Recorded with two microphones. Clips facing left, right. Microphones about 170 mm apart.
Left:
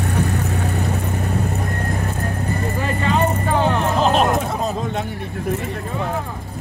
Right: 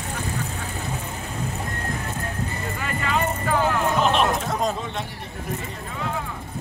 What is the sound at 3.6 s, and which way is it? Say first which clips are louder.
Music: left 3 dB; 30° left (ahead or behind).